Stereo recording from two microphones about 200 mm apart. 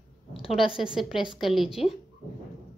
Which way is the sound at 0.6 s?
25° left (ahead or behind).